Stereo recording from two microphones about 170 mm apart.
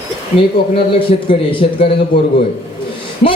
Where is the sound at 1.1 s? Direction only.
40° left (ahead or behind).